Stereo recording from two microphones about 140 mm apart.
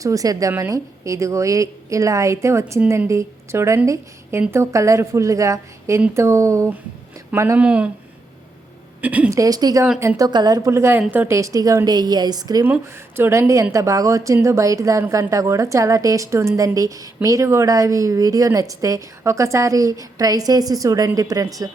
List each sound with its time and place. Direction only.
0.0 s a woman's voice: 25° right (ahead or behind); by 7.9 s 10° right (ahead or behind)
9.0 s a woman's voice: 10° right (ahead or behind)
9.3 s a woman's voice: 25° right (ahead or behind)
12.6 s a woman's voice: 15° right (ahead or behind)